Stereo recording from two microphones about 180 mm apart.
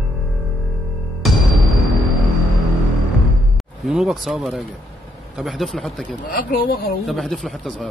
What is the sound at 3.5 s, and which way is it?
Music, centre (ahead or behind).